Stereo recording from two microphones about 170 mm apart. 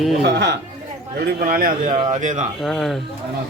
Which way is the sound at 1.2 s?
55° right (ahead or behind).